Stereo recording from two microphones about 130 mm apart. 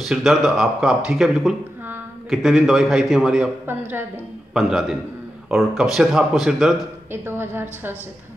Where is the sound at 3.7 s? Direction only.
15° right (ahead or behind).